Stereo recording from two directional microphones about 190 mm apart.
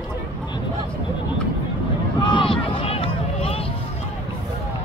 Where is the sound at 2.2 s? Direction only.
25° left (ahead or behind).